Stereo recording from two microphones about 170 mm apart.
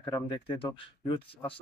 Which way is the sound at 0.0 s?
25° left (ahead or behind).